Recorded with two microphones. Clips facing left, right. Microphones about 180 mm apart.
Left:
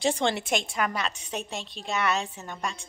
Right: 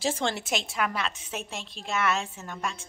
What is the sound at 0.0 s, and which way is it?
Music, centre (ahead or behind).